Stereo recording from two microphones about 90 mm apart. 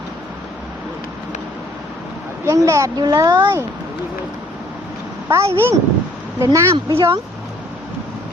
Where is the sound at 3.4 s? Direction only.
30° right (ahead or behind).